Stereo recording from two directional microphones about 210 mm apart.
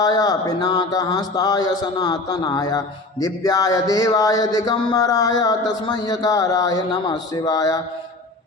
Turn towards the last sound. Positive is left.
turn(degrees=15)  # may be behind; listen again after turning